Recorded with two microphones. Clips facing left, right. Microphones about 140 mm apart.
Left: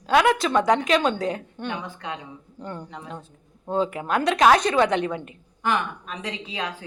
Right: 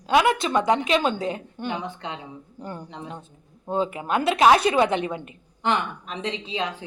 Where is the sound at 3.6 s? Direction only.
5° right (ahead or behind).